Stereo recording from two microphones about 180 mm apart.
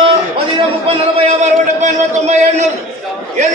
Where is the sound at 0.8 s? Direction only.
35° right (ahead or behind).